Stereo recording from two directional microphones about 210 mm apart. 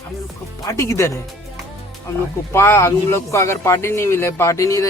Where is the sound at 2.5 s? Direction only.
10° left (ahead or behind).